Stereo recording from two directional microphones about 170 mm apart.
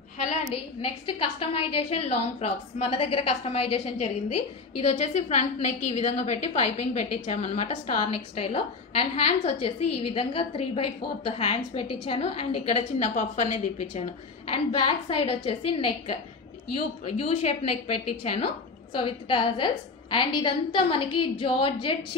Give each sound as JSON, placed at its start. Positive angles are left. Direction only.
{"t": 0.8, "sound": "a woman's voice", "side_deg": 30}
{"t": 14.5, "sound": "a woman's voice", "side_deg": 30}
{"t": 17.0, "sound": "a woman's voice", "side_deg": 35}